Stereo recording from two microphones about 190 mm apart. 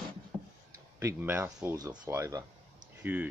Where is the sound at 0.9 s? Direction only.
10° right (ahead or behind).